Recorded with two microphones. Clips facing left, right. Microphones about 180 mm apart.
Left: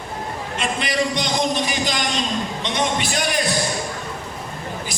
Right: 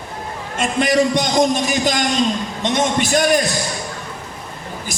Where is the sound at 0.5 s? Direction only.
45° right (ahead or behind).